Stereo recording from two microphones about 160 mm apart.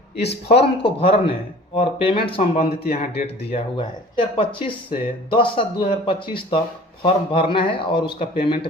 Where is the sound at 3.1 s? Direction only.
90° left.